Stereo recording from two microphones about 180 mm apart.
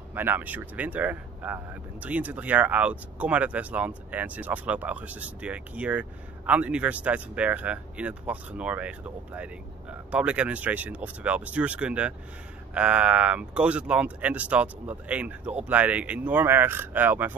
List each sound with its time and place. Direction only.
0.1 s speech: 10° right (ahead or behind)